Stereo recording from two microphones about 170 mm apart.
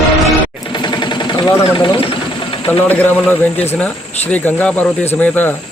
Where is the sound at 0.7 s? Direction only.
25° left (ahead or behind).